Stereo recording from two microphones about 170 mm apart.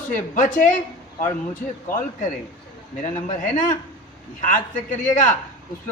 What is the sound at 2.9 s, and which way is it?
A man's voice, 50° left (ahead or behind).